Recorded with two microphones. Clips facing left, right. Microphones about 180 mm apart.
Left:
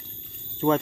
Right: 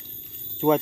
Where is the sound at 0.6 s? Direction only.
10° right (ahead or behind).